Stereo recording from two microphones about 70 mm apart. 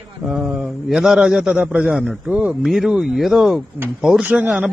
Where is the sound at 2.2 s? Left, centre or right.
Right.